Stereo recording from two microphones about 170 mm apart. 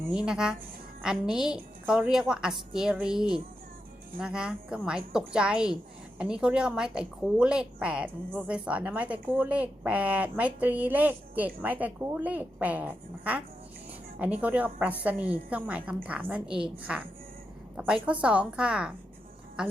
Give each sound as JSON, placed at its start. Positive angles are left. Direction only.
{"t": 0.1, "sound": "a woman's voice", "side_deg": -5}